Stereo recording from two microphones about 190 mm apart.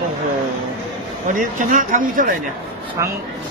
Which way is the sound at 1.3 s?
45° right (ahead or behind).